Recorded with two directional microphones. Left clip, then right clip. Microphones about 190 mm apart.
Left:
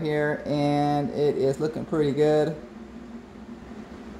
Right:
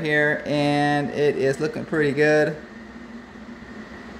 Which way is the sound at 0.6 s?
20° right (ahead or behind).